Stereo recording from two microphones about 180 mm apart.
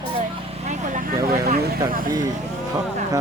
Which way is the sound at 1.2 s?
60° right (ahead or behind).